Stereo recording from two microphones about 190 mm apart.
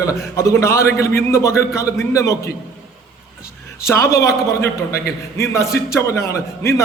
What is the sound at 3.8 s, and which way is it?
A man's voice, 15° left (ahead or behind).